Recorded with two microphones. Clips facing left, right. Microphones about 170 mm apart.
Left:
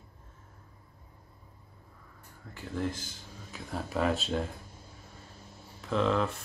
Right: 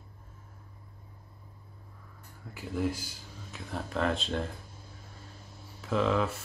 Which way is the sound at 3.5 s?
5° left (ahead or behind).